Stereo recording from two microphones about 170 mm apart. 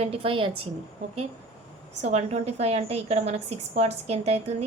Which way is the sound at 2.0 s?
40° right (ahead or behind).